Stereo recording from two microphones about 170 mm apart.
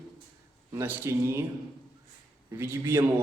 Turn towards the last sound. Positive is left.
turn(degrees=-15)  # may be behind; listen again after turning